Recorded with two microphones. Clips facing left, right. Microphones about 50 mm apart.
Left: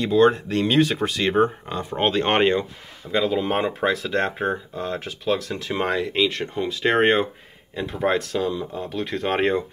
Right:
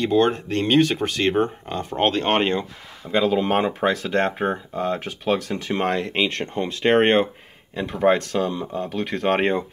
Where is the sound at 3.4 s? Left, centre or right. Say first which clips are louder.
Right 2 dB; centre.